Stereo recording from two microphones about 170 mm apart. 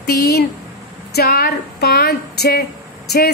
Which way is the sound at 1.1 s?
65° left (ahead or behind).